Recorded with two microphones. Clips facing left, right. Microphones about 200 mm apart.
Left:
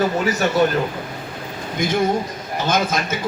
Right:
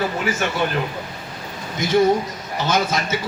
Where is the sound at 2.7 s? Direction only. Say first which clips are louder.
Left 1 dB; 50° left (ahead or behind).